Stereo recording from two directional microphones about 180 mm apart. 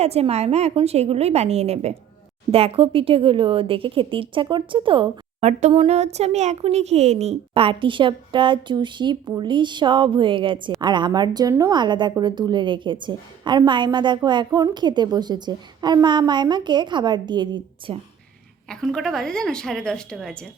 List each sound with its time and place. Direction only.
0.0 s a woman's voice: 35° right (ahead or behind)
18.7 s a woman's voice: 5° left (ahead or behind)